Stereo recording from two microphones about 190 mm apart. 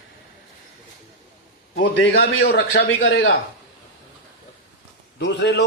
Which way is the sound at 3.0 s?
70° left (ahead or behind).